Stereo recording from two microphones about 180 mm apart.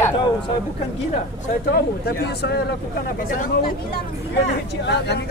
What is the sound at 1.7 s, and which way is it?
Speech, 60° left (ahead or behind).